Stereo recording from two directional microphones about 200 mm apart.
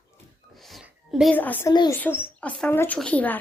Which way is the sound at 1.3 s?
10° left (ahead or behind).